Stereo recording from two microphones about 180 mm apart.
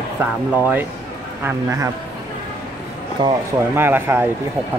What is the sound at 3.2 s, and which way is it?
Speech, 25° right (ahead or behind).